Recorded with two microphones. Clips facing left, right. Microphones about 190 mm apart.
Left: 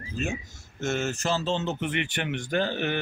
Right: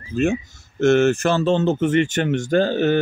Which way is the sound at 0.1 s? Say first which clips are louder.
Right 12 dB; 60° right (ahead or behind).